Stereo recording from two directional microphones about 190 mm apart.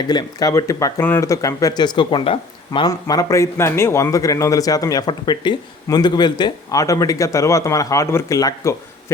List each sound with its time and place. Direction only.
0.1 s speech: 20° left (ahead or behind)